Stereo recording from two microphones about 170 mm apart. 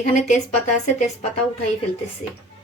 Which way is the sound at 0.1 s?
45° left (ahead or behind).